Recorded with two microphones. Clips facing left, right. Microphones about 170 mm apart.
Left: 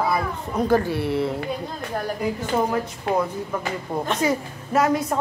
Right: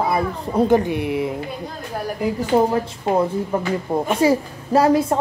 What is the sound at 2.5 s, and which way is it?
A child's voice, 30° right (ahead or behind).